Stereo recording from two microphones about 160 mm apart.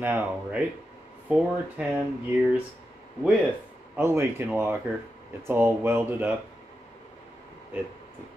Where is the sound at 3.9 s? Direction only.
15° right (ahead or behind).